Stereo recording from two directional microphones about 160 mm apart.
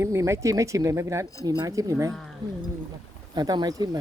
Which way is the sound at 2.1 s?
Centre (ahead or behind).